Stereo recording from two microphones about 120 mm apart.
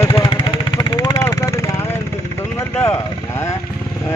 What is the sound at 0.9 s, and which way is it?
Vehicle, 30° left (ahead or behind).